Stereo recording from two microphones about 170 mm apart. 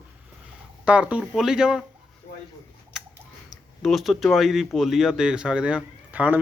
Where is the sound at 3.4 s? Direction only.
Centre (ahead or behind).